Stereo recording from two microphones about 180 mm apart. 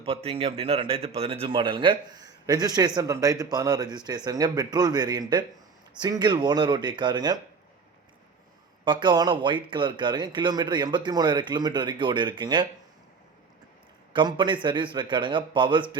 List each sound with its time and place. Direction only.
0.0 s a man's voice: 30° right (ahead or behind)
8.8 s a man's voice: 25° right (ahead or behind)
14.1 s a man's voice: 25° right (ahead or behind)